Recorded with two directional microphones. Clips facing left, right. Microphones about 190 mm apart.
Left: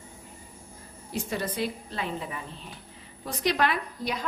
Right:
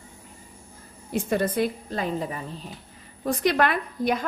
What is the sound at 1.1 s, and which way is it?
Speech, 50° right (ahead or behind).